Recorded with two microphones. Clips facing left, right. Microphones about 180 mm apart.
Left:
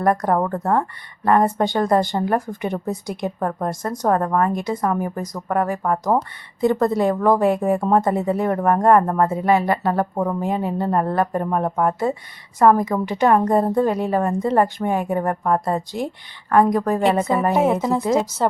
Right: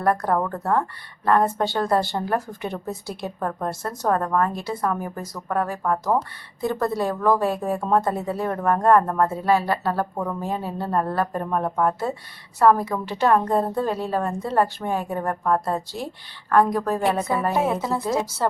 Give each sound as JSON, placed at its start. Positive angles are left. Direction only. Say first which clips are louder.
{"t": 0.0, "sound": "a woman's voice", "louder": "left 3 dB", "side_deg": 15}